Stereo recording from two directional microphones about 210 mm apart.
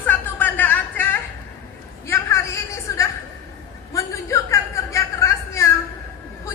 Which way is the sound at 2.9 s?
15° left (ahead or behind).